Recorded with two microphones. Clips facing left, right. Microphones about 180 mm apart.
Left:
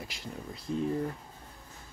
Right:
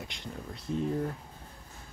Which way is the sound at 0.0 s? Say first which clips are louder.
Even; centre (ahead or behind).